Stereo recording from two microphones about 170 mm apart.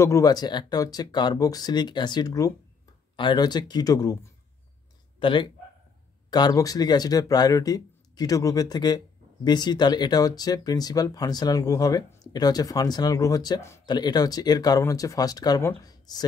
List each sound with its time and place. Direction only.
0.0 s speech: 20° left (ahead or behind)